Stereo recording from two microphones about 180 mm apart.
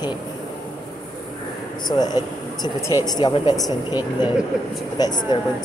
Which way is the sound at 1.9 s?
20° left (ahead or behind).